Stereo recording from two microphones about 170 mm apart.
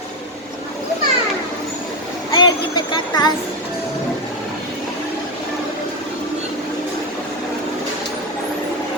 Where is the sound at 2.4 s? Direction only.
25° left (ahead or behind).